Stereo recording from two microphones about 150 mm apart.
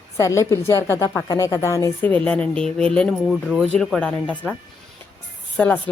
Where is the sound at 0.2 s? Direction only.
20° left (ahead or behind).